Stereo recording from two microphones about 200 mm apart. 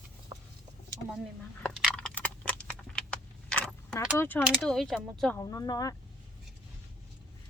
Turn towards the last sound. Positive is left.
turn(degrees=15)  # may be behind; listen again after turning